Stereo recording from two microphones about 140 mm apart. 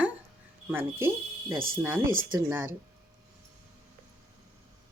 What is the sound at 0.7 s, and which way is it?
Speech, 15° right (ahead or behind).